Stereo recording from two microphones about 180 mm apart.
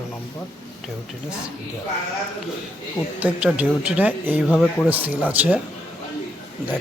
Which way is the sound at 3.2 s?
5° right (ahead or behind).